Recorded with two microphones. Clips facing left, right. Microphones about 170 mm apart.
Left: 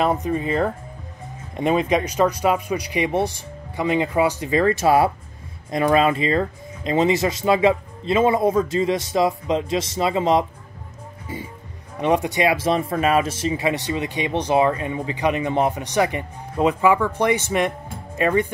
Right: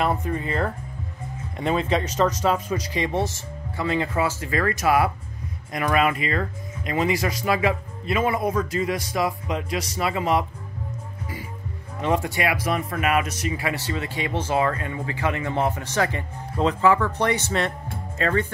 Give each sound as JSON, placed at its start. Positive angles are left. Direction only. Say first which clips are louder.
{"t": 0.0, "sound": "speech", "louder": "left 4 dB", "side_deg": 20}
{"t": 12.0, "sound": "speech", "louder": "left 4 dB", "side_deg": 20}